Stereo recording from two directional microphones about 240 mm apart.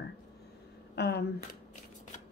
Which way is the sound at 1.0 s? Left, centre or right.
Left.